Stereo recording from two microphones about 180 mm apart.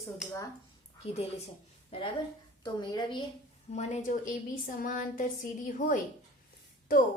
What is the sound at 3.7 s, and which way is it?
A woman's voice, 40° left (ahead or behind).